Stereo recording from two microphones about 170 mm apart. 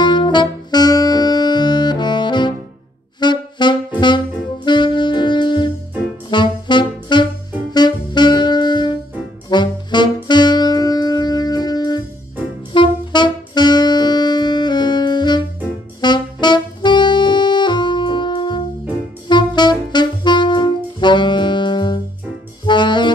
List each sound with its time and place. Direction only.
0.0 s saxophone: 25° left (ahead or behind)